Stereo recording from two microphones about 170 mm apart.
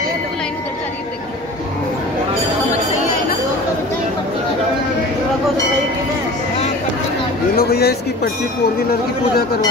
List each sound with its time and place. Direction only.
7.5 s speech: 70° left (ahead or behind)